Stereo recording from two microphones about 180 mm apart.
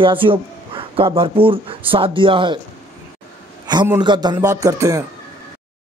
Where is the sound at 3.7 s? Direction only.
25° right (ahead or behind).